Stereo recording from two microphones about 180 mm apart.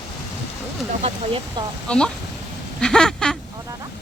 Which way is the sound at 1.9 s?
5° left (ahead or behind).